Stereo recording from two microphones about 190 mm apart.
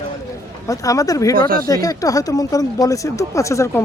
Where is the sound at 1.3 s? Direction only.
50° right (ahead or behind).